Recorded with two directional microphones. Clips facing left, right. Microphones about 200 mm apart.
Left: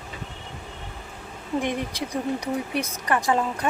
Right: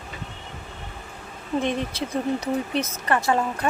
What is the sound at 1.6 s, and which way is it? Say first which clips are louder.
Speech: right 2 dB; 15° left (ahead or behind).